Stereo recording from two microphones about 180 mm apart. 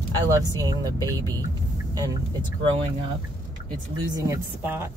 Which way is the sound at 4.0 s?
20° right (ahead or behind).